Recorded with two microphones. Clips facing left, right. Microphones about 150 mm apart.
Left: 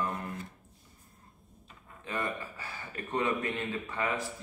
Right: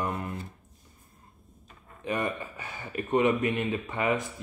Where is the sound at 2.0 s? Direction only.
20° right (ahead or behind).